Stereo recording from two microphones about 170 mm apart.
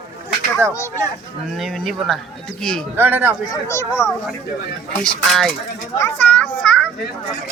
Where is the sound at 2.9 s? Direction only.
10° right (ahead or behind).